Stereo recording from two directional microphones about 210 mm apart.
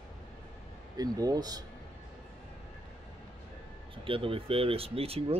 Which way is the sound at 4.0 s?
25° right (ahead or behind).